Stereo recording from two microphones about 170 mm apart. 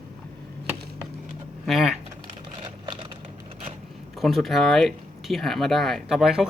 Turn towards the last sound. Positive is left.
turn(degrees=-5)  # may be behind; listen again after turning